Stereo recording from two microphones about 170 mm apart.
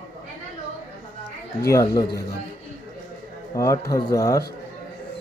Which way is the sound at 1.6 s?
20° left (ahead or behind).